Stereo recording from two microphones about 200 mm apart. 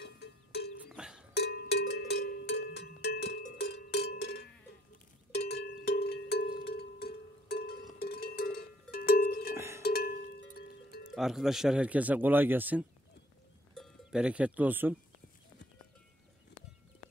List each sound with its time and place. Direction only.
0.0 s cowbell: 55° left (ahead or behind)
0.8 s cowbell: 5° right (ahead or behind)
1.3 s cowbell: 55° left (ahead or behind)
5.3 s a sound: 55° left (ahead or behind)
8.0 s cowbell: 50° left (ahead or behind)
8.9 s music: 50° left (ahead or behind)
11.1 s speech: centre (ahead or behind)